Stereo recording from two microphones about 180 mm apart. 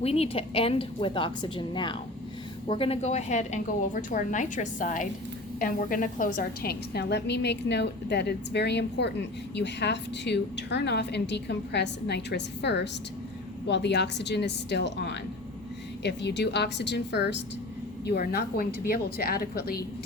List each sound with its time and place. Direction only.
0.0 s a woman's voice: 35° left (ahead or behind); by 17.4 s 70° left (ahead or behind)
18.0 s speech: 60° left (ahead or behind)